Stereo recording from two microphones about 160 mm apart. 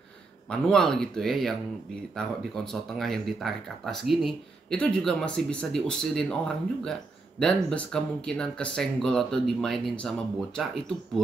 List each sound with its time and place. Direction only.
0.5 s speech: 5° left (ahead or behind)